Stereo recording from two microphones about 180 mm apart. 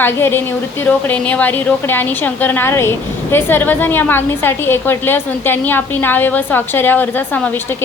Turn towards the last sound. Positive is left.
turn(degrees=10)  # may be behind; listen again after turning